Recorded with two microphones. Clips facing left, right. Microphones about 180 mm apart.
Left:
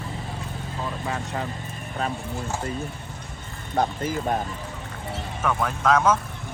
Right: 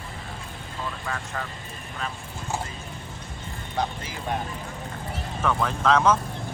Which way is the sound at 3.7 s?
45° left (ahead or behind).